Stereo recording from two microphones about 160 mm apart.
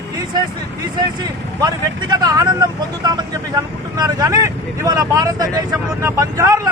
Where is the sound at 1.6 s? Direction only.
25° right (ahead or behind).